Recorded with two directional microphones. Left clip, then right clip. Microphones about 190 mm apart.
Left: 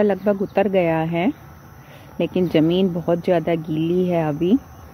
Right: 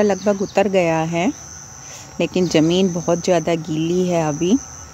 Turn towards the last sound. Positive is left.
turn(degrees=-10)  # may be behind; listen again after turning